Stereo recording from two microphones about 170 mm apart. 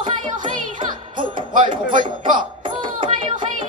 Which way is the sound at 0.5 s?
30° right (ahead or behind).